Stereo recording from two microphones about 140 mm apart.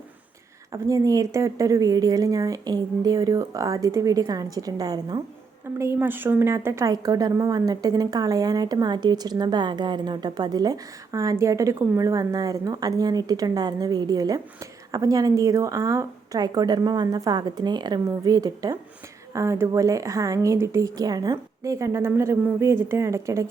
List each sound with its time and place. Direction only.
0.7 s a woman's voice: 25° right (ahead or behind)
5.8 s a woman's voice: 15° right (ahead or behind)